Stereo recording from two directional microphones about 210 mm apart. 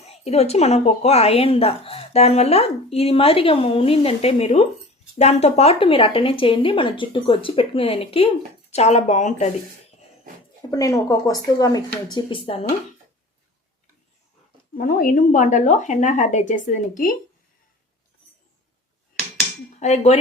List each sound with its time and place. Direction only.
0.0 s a woman's voice: 30° left (ahead or behind)
10.7 s a woman's voice: 15° left (ahead or behind)
14.8 s a woman's voice: 40° left (ahead or behind)
19.8 s a woman's voice: 30° left (ahead or behind)